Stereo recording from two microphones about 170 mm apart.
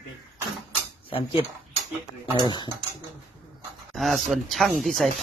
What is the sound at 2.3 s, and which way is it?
Speech, 25° left (ahead or behind).